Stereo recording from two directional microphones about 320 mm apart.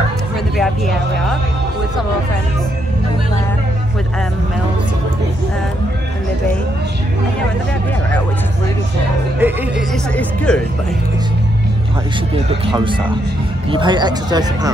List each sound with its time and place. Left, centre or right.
9.4 s speech: centre
12.4 s speech: centre